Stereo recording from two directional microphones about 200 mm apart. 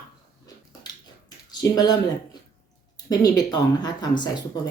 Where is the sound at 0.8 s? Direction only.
20° left (ahead or behind).